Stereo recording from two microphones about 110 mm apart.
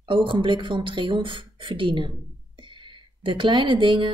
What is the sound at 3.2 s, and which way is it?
Speech, 50° right (ahead or behind).